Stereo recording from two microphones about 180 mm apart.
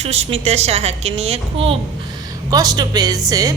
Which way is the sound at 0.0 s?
35° right (ahead or behind).